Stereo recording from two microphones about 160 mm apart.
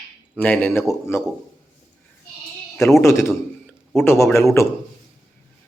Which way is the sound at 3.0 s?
15° left (ahead or behind).